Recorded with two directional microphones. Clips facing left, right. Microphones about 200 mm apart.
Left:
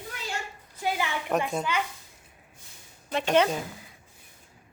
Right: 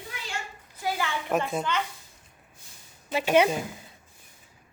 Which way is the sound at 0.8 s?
15° left (ahead or behind).